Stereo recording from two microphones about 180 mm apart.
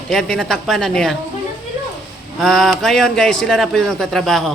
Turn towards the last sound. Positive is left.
turn(degrees=0)  # may be behind; listen again after turning